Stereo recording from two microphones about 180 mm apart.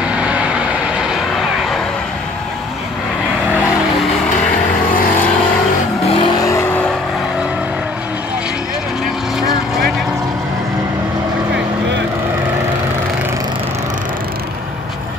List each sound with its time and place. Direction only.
0.0 s vehicle: 5° right (ahead or behind)
6.0 s vehicle: 30° left (ahead or behind); by 6.9 s 10° left (ahead or behind)
9.4 s vehicle: centre (ahead or behind)